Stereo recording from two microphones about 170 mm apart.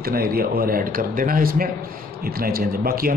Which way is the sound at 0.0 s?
60° right (ahead or behind).